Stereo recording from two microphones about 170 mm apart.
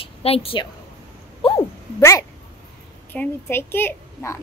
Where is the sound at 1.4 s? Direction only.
35° left (ahead or behind).